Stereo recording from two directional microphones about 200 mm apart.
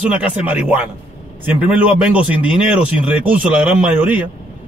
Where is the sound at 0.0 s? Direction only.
5° right (ahead or behind).